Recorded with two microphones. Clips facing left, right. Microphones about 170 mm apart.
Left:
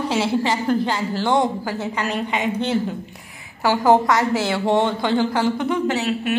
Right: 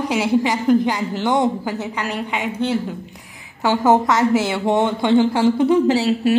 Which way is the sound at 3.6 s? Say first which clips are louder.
Even; 20° right (ahead or behind).